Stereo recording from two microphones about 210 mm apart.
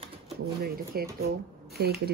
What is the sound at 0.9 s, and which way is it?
Speech, 45° right (ahead or behind).